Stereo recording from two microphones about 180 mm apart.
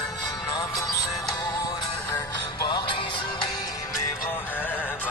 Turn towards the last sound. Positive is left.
turn(degrees=10)  # may be behind; listen again after turning